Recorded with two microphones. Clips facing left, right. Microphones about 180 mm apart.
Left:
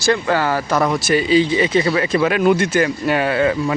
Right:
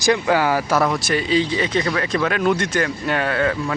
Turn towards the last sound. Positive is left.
turn(degrees=10)  # may be behind; listen again after turning